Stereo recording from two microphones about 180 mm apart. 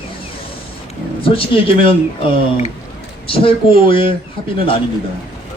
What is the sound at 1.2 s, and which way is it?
Speech, 30° left (ahead or behind).